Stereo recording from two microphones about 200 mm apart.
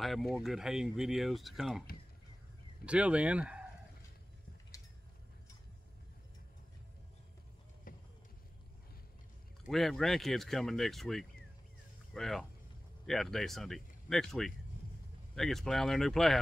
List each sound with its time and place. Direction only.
0.0 s speech: centre (ahead or behind)
7.9 s run: 45° left (ahead or behind)
9.7 s speech: centre (ahead or behind)